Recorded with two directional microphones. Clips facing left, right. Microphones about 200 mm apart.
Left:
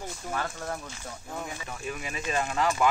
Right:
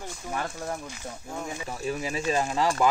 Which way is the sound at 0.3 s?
20° right (ahead or behind).